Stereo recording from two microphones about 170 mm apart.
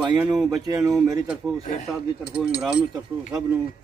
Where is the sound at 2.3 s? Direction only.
5° right (ahead or behind).